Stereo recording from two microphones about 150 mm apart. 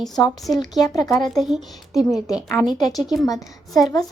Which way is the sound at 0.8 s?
20° left (ahead or behind).